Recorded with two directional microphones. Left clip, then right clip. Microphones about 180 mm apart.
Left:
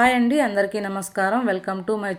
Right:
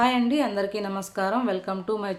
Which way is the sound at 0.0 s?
30° left (ahead or behind).